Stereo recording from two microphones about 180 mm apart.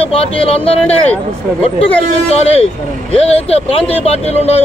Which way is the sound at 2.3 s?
35° left (ahead or behind).